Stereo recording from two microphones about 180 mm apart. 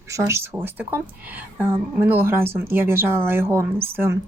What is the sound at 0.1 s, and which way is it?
Speech, 15° right (ahead or behind).